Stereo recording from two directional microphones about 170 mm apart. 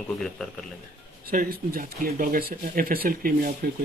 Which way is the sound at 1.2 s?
60° right (ahead or behind).